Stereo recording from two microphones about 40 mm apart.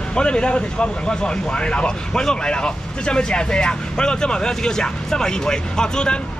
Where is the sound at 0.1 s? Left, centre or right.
Left.